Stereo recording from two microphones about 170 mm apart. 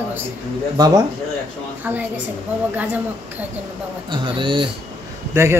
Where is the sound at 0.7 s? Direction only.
20° right (ahead or behind).